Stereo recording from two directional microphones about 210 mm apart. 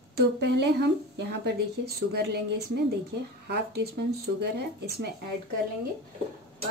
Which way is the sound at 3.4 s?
50° right (ahead or behind).